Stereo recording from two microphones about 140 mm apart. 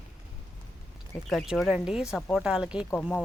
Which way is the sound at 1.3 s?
5° right (ahead or behind).